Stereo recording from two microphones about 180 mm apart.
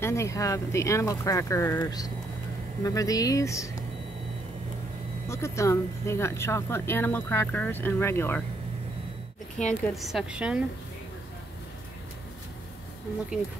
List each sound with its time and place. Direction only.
0.0 s speech: 15° left (ahead or behind)
5.3 s speech: 15° left (ahead or behind)
9.6 s a woman's voice: 5° left (ahead or behind)